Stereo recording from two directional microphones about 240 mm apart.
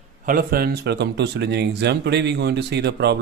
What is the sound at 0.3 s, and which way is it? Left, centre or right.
Speech, right.